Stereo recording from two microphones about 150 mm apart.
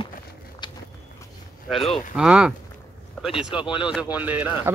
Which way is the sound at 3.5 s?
35° left (ahead or behind).